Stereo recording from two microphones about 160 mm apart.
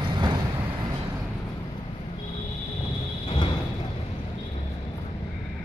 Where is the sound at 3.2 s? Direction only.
35° left (ahead or behind).